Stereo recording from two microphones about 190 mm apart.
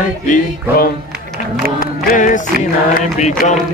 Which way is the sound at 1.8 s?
45° left (ahead or behind).